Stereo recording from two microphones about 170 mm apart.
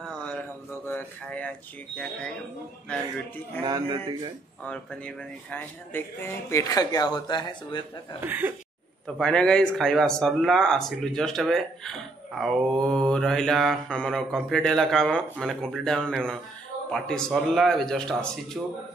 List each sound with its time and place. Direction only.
0.2 s a sound: 10° left (ahead or behind)
2.0 s speech: 5° left (ahead or behind)
3.6 s speech: 25° right (ahead or behind)
4.6 s speech: 10° left (ahead or behind); by 7.8 s 25° left (ahead or behind)
8.2 s speech: 10° right (ahead or behind)
9.0 s speech: 5° left (ahead or behind)